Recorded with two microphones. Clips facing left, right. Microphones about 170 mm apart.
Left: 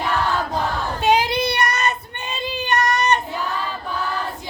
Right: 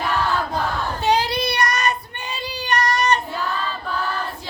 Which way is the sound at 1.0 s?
20° left (ahead or behind).